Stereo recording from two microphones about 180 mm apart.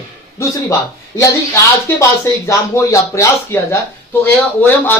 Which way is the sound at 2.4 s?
15° left (ahead or behind).